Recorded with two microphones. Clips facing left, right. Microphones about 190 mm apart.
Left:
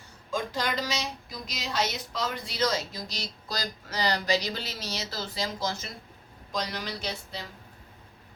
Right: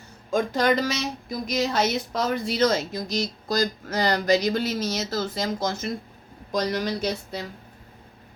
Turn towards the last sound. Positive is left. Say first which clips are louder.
# right 8 dB
turn(degrees=-45)  # may be behind; listen again after turning